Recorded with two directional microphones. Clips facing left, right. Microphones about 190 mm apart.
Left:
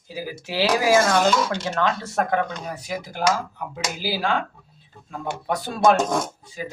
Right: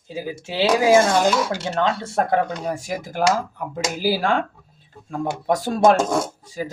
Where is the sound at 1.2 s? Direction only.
10° right (ahead or behind).